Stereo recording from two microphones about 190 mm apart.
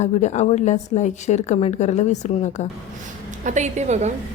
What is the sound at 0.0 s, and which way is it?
A woman's voice, 35° left (ahead or behind).